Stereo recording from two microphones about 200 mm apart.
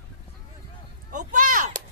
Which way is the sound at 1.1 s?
40° right (ahead or behind).